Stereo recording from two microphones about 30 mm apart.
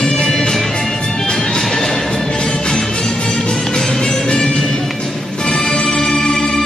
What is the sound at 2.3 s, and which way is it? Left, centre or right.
Music, left.